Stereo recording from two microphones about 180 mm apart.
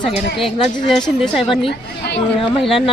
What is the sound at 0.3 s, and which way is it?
A woman's voice, centre (ahead or behind).